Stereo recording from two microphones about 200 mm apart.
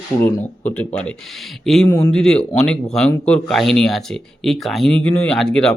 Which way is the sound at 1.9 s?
15° left (ahead or behind).